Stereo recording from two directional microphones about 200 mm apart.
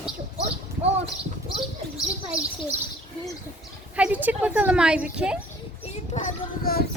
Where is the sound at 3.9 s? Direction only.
5° right (ahead or behind).